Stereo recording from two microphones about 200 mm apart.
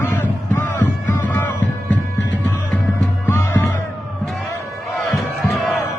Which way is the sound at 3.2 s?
10° left (ahead or behind).